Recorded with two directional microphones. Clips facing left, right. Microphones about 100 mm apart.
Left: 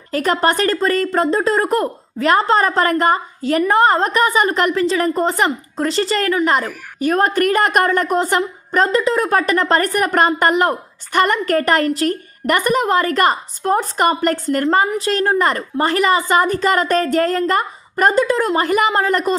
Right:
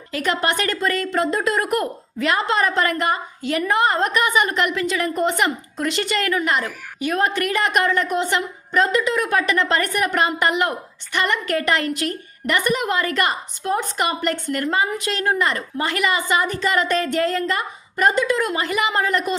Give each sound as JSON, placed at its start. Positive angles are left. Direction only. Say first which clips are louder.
{"t": 0.1, "sound": "a woman's voice", "louder": "left 5 dB", "side_deg": 40}